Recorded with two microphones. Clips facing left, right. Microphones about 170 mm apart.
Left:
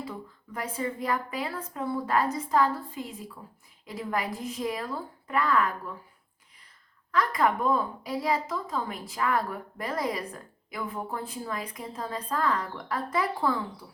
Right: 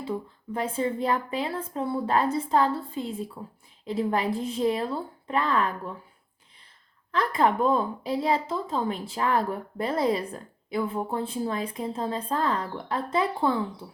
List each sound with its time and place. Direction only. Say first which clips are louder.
0.0 s a woman's voice: right 6 dB; 25° right (ahead or behind)
7.1 s a woman's voice: right 2 dB; 30° right (ahead or behind)